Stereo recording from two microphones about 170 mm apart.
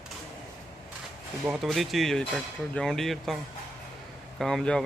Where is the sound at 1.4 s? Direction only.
Centre (ahead or behind).